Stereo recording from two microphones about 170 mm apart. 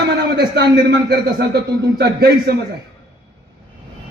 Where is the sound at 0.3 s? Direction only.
90° right; by 2.6 s 65° right (ahead or behind).